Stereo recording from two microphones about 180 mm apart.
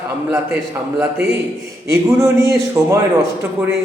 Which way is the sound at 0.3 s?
15° right (ahead or behind).